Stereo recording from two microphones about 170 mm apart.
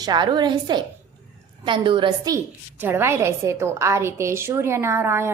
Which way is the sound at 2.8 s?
15° right (ahead or behind).